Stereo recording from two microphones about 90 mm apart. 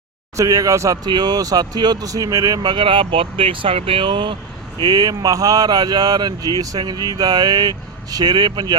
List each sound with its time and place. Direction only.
0.3 s speech: 40° right (ahead or behind)
1.1 s speech: 50° right (ahead or behind)
4.8 s speech: 45° right (ahead or behind)